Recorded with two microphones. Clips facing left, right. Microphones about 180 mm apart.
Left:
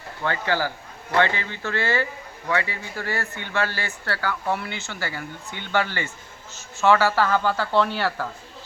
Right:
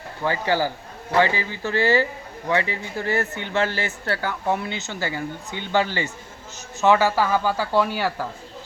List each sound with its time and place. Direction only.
0.2 s speech: 15° right (ahead or behind)